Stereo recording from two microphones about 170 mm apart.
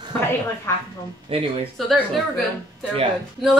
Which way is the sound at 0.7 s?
15° left (ahead or behind).